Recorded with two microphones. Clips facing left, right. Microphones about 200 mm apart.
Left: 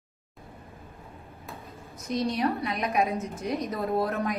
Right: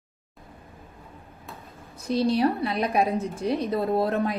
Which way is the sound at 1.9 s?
30° right (ahead or behind).